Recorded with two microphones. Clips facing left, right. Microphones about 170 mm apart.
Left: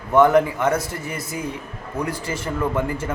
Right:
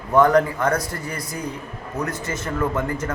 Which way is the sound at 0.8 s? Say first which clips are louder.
Even; 25° left (ahead or behind).